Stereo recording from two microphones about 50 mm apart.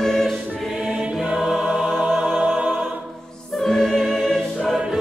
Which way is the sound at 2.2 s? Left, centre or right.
Centre.